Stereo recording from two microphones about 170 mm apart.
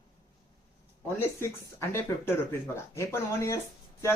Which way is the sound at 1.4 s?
15° left (ahead or behind).